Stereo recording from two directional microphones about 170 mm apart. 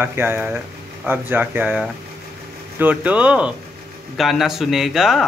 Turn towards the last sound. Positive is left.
turn(degrees=0)  # may be behind; listen again after turning